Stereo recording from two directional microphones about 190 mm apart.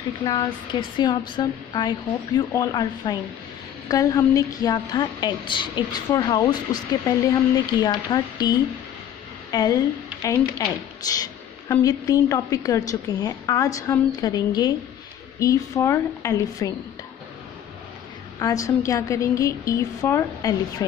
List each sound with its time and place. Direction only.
0.2 s a woman's voice: 20° left (ahead or behind)
18.4 s a woman's voice: 15° left (ahead or behind)